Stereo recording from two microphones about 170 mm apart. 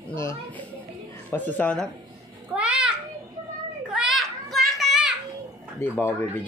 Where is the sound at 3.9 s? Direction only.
Centre (ahead or behind).